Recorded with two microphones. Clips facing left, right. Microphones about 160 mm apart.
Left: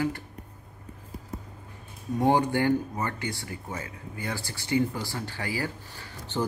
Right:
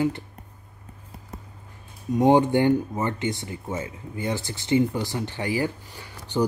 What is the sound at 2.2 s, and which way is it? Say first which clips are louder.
Speech: right 5 dB; 20° right (ahead or behind).